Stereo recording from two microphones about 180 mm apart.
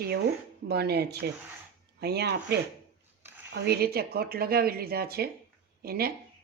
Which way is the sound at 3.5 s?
60° right (ahead or behind).